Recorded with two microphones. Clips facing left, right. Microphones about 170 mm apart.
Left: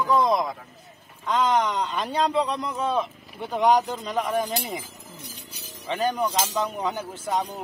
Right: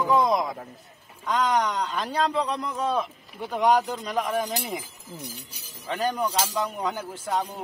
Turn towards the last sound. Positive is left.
turn(degrees=10)  # may be behind; listen again after turning